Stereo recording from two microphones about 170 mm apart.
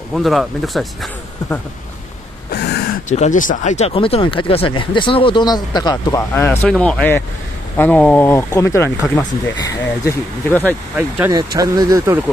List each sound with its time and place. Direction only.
0.1 s speech: centre (ahead or behind)
2.5 s a sound: 75° left (ahead or behind)
3.1 s speech: 45° left (ahead or behind); by 6.2 s 25° left (ahead or behind)
6.3 s speech: 10° left (ahead or behind)
11.0 s speech: 10° right (ahead or behind)
11.3 s speech: 20° right (ahead or behind)